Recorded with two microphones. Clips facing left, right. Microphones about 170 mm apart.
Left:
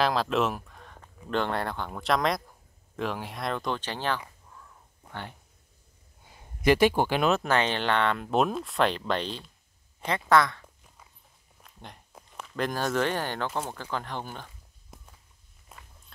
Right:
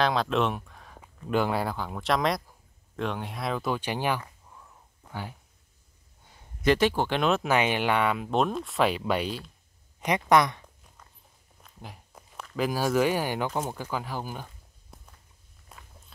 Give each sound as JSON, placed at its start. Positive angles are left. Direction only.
{"t": 0.0, "sound": "speech", "side_deg": 0}
{"t": 6.6, "sound": "speech", "side_deg": 10}
{"t": 7.4, "sound": "speech", "side_deg": -10}
{"t": 8.3, "sound": "speech", "side_deg": 5}
{"t": 11.6, "sound": "a sound", "side_deg": 0}
{"t": 13.6, "sound": "speech", "side_deg": -10}
{"t": 15.7, "sound": "walk", "side_deg": 5}